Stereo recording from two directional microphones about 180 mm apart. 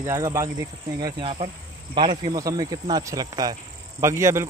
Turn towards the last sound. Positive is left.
turn(degrees=-15)  # may be behind; listen again after turning